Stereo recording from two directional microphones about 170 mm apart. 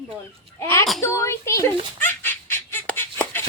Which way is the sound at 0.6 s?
15° left (ahead or behind).